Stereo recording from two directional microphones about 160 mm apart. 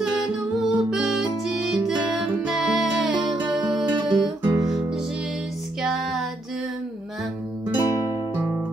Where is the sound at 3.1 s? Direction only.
30° right (ahead or behind).